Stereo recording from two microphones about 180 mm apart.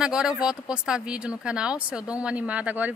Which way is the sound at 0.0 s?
5° right (ahead or behind).